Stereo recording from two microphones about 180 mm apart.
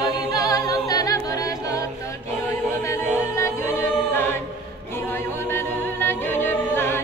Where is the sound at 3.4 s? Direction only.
15° left (ahead or behind).